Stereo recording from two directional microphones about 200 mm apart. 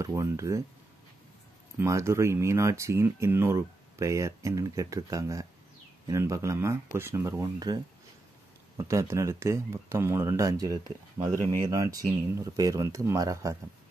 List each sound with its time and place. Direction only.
0.0 s speech: 15° right (ahead or behind)
1.8 s speech: 15° right (ahead or behind)